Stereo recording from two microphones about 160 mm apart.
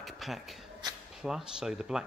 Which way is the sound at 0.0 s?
Centre (ahead or behind).